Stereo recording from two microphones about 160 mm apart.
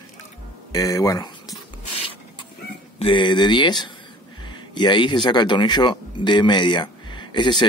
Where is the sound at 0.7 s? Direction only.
20° left (ahead or behind).